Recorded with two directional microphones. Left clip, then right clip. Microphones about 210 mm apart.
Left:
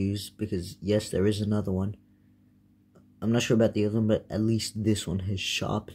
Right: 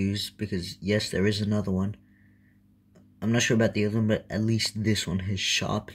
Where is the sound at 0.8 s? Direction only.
30° right (ahead or behind).